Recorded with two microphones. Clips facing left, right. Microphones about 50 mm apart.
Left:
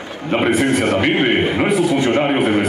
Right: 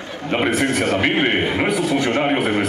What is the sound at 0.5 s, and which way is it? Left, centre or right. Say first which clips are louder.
Speech: left 3 dB; centre.